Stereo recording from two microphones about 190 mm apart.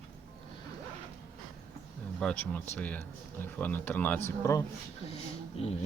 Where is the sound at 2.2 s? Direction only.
5° left (ahead or behind).